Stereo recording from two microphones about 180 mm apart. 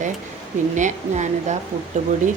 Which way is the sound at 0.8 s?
40° right (ahead or behind).